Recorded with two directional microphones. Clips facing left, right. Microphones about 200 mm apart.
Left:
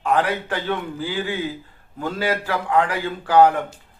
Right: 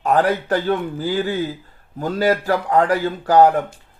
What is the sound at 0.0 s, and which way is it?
A man's voice, 40° right (ahead or behind).